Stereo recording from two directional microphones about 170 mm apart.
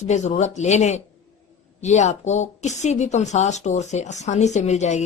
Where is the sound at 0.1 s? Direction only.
45° left (ahead or behind).